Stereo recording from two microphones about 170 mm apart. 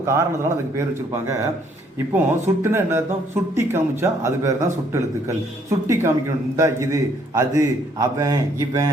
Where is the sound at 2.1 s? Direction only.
15° right (ahead or behind).